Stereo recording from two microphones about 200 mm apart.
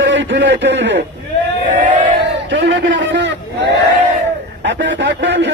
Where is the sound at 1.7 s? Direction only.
40° right (ahead or behind).